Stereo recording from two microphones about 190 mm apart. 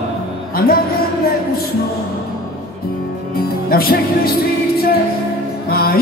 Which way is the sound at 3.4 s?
50° left (ahead or behind).